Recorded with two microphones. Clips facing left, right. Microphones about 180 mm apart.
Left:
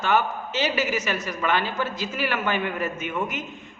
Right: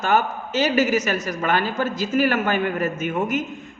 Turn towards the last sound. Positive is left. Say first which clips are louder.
# right 6 dB
turn(degrees=-45)  # may be behind; listen again after turning